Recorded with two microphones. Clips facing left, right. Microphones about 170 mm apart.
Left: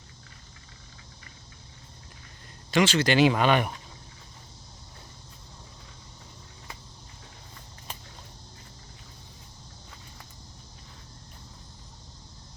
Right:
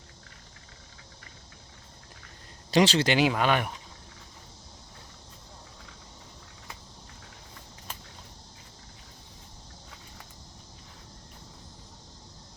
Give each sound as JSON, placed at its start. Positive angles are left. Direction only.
{"t": 2.7, "sound": "speech", "side_deg": -35}
{"t": 3.1, "sound": "speech", "side_deg": -10}